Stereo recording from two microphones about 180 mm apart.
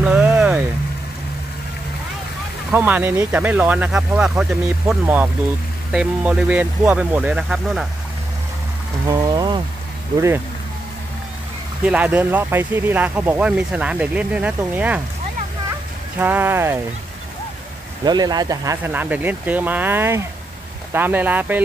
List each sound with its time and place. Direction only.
0.0 s a sound: 10° right (ahead or behind)
2.7 s speech: 10° right (ahead or behind)
9.0 s a sound: 20° right (ahead or behind)
11.8 s speech: 10° right (ahead or behind)
16.2 s speech: 10° right (ahead or behind)
18.0 s speech: 25° right (ahead or behind)